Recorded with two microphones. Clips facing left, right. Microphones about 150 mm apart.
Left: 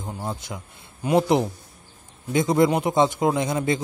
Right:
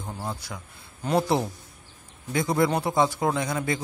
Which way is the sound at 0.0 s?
20° left (ahead or behind).